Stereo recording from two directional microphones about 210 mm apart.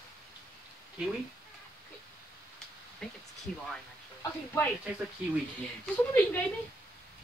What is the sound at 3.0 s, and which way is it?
Speech, 5° left (ahead or behind).